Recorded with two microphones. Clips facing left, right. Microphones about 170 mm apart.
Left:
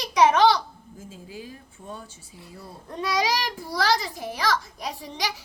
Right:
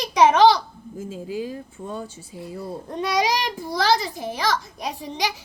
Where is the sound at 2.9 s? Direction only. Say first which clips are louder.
Right 3 dB; 20° right (ahead or behind).